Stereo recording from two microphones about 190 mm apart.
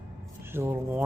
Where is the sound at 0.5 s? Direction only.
10° right (ahead or behind).